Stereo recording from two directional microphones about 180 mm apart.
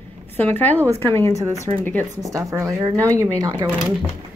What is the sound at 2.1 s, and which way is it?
Speech, 20° right (ahead or behind).